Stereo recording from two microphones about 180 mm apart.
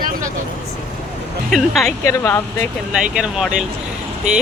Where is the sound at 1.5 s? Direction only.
Centre (ahead or behind).